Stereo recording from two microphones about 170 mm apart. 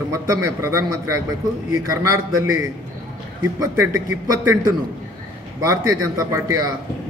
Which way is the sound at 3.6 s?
20° right (ahead or behind).